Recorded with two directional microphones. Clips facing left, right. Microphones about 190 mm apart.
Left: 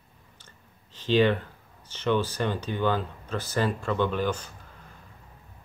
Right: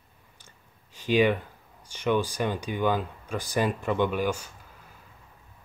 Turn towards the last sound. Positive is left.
turn(degrees=-10)  # may be behind; listen again after turning